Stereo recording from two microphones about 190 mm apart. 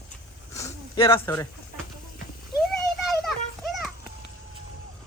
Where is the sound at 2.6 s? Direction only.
Centre (ahead or behind).